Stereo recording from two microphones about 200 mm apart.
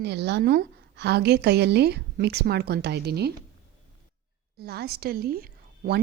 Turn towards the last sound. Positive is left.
turn(degrees=-50)  # may be behind; listen again after turning